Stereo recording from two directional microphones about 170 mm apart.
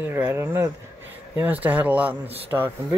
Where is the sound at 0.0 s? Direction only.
10° right (ahead or behind).